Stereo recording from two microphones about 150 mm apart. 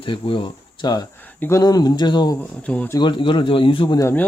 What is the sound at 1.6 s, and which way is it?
Speech, 25° left (ahead or behind).